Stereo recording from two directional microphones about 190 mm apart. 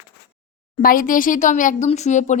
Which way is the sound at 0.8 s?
45° left (ahead or behind).